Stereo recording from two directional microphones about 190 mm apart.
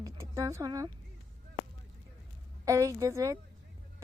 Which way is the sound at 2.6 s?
15° right (ahead or behind).